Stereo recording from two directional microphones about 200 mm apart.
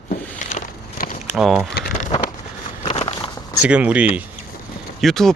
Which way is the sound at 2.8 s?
30° left (ahead or behind).